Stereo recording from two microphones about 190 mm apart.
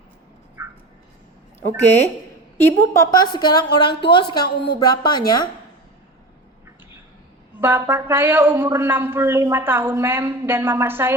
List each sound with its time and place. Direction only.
0.6 s a sound: 15° right (ahead or behind)
2.6 s a woman's voice: 15° left (ahead or behind)
7.6 s a man's voice: 15° right (ahead or behind)